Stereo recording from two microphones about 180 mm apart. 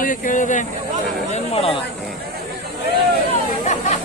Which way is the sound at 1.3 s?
35° left (ahead or behind).